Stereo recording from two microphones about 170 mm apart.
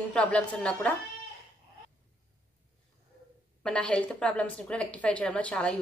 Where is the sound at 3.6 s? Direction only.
5° left (ahead or behind).